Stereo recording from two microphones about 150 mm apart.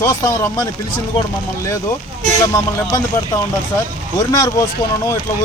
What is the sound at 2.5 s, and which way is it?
Speech, 20° left (ahead or behind).